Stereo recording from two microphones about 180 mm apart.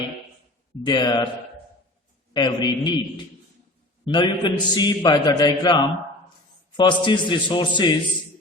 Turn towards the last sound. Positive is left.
turn(degrees=25)  # may be behind; listen again after turning